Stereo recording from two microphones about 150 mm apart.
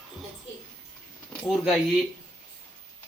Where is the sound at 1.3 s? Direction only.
Centre (ahead or behind).